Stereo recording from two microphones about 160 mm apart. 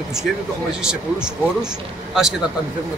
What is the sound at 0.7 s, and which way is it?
Speech, 5° right (ahead or behind).